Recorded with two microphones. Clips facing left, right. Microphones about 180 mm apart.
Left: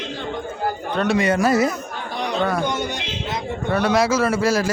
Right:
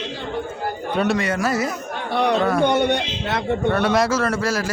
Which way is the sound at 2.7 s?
60° right (ahead or behind).